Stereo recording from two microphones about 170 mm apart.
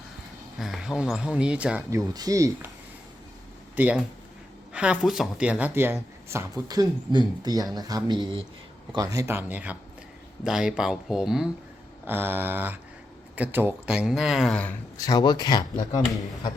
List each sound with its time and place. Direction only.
0.6 s speech: centre (ahead or behind)
2.0 s speech: 20° right (ahead or behind)
3.8 s speech: 10° right (ahead or behind)
14.9 s speech: 20° left (ahead or behind)